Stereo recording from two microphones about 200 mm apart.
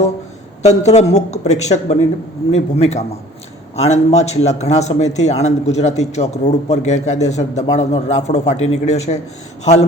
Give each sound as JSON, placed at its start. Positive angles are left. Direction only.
{"t": 0.6, "sound": "a man's voice", "side_deg": 35}